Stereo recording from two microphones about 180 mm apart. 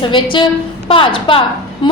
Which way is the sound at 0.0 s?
25° left (ahead or behind).